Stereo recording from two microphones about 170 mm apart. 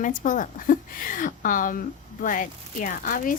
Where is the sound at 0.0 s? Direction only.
50° left (ahead or behind).